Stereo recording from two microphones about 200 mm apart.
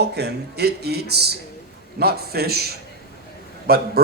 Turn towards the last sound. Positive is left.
turn(degrees=-50)  # may be behind; listen again after turning